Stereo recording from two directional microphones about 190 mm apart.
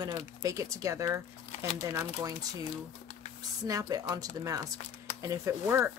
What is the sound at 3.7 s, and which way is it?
Speech, 20° right (ahead or behind).